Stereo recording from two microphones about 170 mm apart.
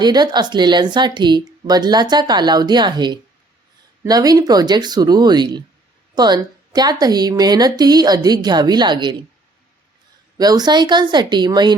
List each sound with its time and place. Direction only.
0.0 s speech: 25° right (ahead or behind)
10.3 s speech: 20° right (ahead or behind)